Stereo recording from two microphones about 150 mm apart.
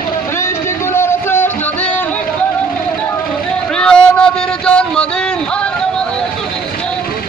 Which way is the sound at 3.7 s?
5° left (ahead or behind).